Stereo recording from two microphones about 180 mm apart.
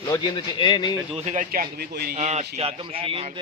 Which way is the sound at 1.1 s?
40° right (ahead or behind).